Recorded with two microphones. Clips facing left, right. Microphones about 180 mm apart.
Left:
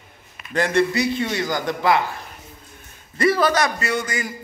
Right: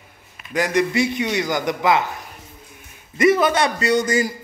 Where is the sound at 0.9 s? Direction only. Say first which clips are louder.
Right 2 dB; 20° right (ahead or behind).